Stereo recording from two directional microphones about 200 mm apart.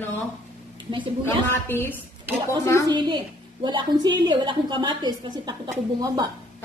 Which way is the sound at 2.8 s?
20° right (ahead or behind).